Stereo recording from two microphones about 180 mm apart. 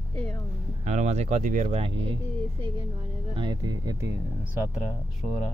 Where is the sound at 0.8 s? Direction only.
40° right (ahead or behind).